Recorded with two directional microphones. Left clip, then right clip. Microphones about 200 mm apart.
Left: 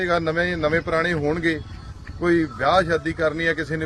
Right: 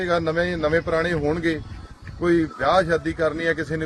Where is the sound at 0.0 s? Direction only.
Centre (ahead or behind).